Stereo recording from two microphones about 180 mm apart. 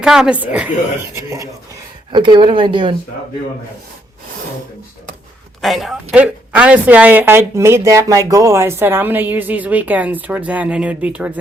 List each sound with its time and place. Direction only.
0.0 s speech: 5° right (ahead or behind)
2.1 s speech: 25° right (ahead or behind)
5.6 s speech: centre (ahead or behind)